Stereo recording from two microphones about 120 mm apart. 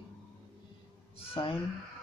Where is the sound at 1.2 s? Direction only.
50° left (ahead or behind).